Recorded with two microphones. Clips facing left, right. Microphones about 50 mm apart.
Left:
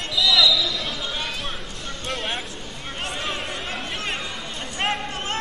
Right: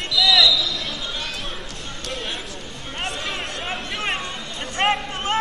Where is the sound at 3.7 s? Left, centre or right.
Right.